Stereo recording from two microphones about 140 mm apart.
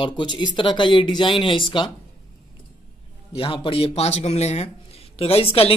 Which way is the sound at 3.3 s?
40° left (ahead or behind).